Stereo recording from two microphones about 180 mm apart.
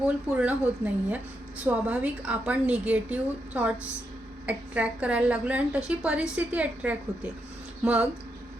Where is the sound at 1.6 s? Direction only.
10° right (ahead or behind).